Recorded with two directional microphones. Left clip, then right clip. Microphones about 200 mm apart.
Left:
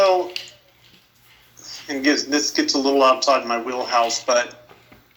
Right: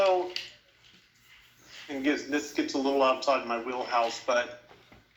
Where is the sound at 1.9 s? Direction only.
25° left (ahead or behind).